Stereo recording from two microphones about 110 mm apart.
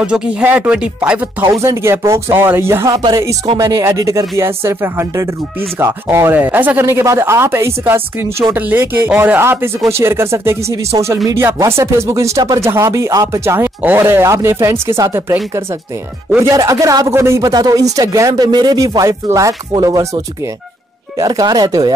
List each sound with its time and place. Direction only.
0.0 s speech: 10° right (ahead or behind)
1.5 s speech: 25° right (ahead or behind)
2.9 s speech: 40° right (ahead or behind)
3.5 s speech: 25° right (ahead or behind)
16.3 s speech: 30° right (ahead or behind)
21.2 s speech: 35° right (ahead or behind)